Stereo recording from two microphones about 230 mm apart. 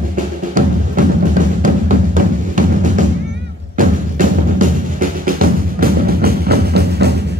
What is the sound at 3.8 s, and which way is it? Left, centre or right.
Music, right.